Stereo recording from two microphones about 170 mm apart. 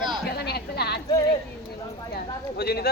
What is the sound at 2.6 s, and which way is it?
Speech, 70° left (ahead or behind).